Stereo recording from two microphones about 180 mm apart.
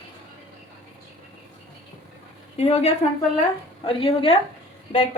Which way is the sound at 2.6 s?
35° left (ahead or behind).